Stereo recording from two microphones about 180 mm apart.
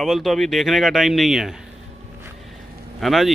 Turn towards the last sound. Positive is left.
turn(degrees=0)  # may be behind; listen again after turning